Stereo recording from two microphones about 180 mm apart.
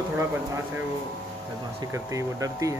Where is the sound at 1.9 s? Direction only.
15° right (ahead or behind).